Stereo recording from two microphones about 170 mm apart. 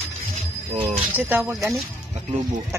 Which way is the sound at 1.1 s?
10° right (ahead or behind).